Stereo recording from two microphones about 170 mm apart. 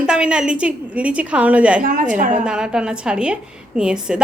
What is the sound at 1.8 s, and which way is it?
Speech, 55° right (ahead or behind).